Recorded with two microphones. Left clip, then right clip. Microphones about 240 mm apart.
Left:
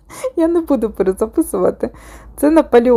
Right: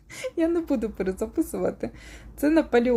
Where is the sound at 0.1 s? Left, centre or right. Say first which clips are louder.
Left 9 dB; centre.